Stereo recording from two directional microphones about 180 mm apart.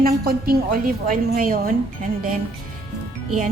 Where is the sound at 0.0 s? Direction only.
55° right (ahead or behind).